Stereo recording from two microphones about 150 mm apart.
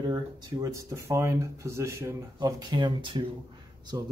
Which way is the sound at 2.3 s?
30° right (ahead or behind).